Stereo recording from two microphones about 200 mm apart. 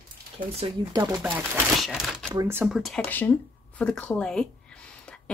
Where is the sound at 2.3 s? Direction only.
15° right (ahead or behind).